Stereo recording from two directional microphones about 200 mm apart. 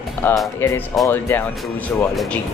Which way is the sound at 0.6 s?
10° left (ahead or behind).